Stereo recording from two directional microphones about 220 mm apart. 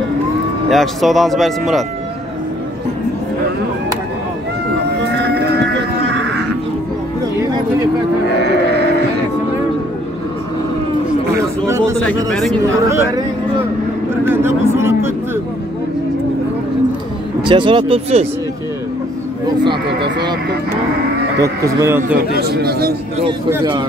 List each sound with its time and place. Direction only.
0.7 s speech: centre (ahead or behind)
5.0 s music: 50° right (ahead or behind)
8.4 s livestock: 50° right (ahead or behind)
11.3 s a sound: 15° right (ahead or behind)
12.3 s speech: centre (ahead or behind)
12.6 s speech: 15° right (ahead or behind)
14.2 s a sound: 10° right (ahead or behind)
17.5 s speech: 25° right (ahead or behind)
19.9 s speech: 50° right (ahead or behind)
21.4 s speech: 15° right (ahead or behind)
22.4 s speech: 45° right (ahead or behind)
23.5 s speech: 20° right (ahead or behind)